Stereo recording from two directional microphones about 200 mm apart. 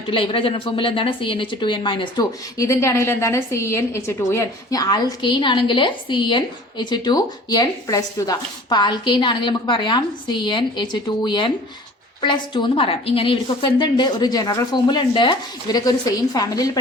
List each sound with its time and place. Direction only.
0.1 s a woman's voice: 25° left (ahead or behind)